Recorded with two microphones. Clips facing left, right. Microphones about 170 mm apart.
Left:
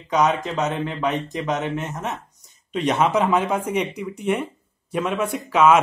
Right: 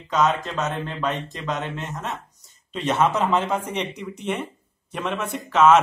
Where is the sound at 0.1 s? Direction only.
15° left (ahead or behind).